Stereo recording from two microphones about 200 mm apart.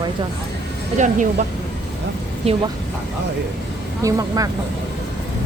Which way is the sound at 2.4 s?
30° right (ahead or behind).